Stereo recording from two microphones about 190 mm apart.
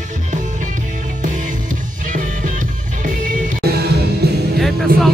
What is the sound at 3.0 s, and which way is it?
Music, 45° right (ahead or behind).